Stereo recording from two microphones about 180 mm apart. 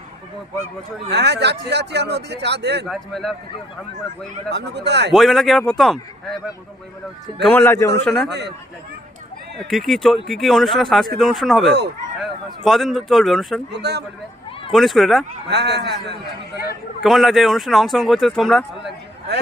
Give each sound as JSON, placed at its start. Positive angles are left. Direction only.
{"t": 1.1, "sound": "speech", "side_deg": -70}
{"t": 2.8, "sound": "speech", "side_deg": 0}
{"t": 4.5, "sound": "speech", "side_deg": -70}
{"t": 5.1, "sound": "speech", "side_deg": 0}
{"t": 7.4, "sound": "a man's voice", "side_deg": 10}
{"t": 8.0, "sound": "speech", "side_deg": 5}
{"t": 8.3, "sound": "speech", "side_deg": -70}
{"t": 9.6, "sound": "speech", "side_deg": 0}
{"t": 13.7, "sound": "speech", "side_deg": -70}
{"t": 14.7, "sound": "speech", "side_deg": 0}
{"t": 15.4, "sound": "speech", "side_deg": -70}
{"t": 17.0, "sound": "speech", "side_deg": 0}